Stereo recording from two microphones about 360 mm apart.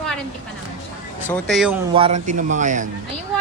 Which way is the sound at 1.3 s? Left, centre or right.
Centre.